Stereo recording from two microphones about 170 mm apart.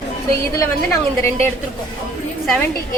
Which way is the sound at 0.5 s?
15° left (ahead or behind).